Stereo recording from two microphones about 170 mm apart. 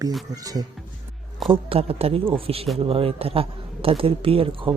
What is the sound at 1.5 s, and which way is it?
A man's voice, 35° right (ahead or behind).